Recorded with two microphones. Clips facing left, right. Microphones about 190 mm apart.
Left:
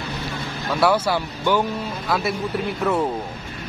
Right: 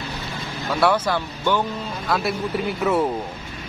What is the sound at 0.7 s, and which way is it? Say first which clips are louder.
Speech: left 1 dB; centre (ahead or behind).